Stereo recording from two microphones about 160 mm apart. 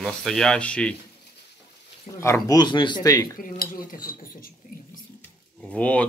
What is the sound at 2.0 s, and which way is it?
Speech, 15° left (ahead or behind).